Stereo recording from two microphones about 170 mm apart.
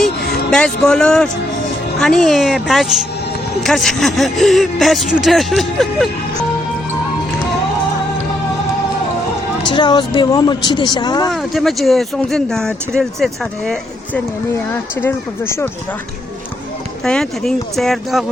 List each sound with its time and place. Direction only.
0.5 s speech: 5° left (ahead or behind)
9.6 s speech: 25° left (ahead or behind)
11.3 s speech: centre (ahead or behind)
17.0 s speech: 5° left (ahead or behind)